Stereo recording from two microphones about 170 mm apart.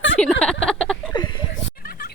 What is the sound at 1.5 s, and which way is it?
Fowl, 60° left (ahead or behind).